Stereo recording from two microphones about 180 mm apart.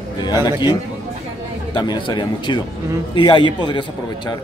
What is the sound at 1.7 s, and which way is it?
A man's voice, 25° left (ahead or behind).